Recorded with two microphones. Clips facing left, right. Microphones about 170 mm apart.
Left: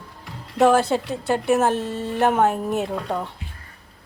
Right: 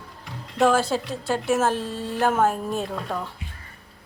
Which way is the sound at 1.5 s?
20° left (ahead or behind).